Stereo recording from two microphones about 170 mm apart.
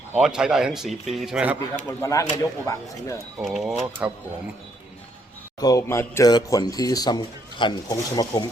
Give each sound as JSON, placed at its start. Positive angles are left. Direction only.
{"t": 0.1, "sound": "speech", "side_deg": -5}
{"t": 1.9, "sound": "speech", "side_deg": 20}
{"t": 3.4, "sound": "speech", "side_deg": 0}
{"t": 5.5, "sound": "speech", "side_deg": 20}